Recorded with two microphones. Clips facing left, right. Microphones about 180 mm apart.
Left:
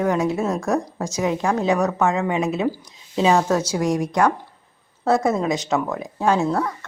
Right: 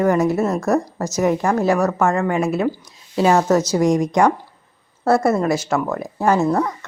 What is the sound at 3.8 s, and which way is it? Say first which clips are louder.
Speech: right 2 dB; 20° right (ahead or behind).